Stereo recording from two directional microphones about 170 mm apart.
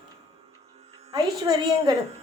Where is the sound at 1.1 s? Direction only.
20° right (ahead or behind).